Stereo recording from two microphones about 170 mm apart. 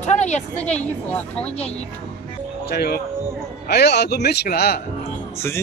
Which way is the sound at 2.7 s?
65° left (ahead or behind).